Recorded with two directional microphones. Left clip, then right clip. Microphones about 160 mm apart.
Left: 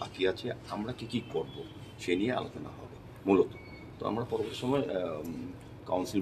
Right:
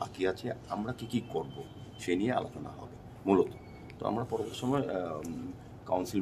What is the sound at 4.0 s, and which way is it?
Speech, 35° right (ahead or behind).